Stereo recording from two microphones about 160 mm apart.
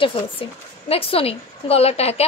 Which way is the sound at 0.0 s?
35° left (ahead or behind).